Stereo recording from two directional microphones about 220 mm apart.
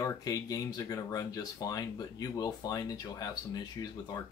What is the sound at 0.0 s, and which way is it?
Speech, 15° left (ahead or behind).